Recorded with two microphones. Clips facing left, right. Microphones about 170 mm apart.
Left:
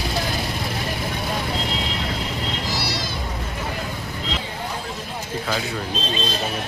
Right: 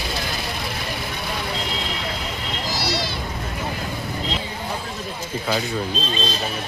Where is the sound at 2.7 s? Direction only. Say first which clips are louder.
Right 2 dB; 50° left (ahead or behind).